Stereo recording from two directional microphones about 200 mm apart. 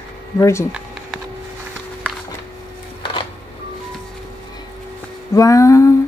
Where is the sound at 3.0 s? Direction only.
25° left (ahead or behind).